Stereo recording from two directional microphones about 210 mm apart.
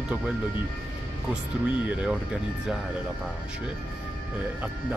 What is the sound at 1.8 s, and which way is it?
Speech, 5° right (ahead or behind).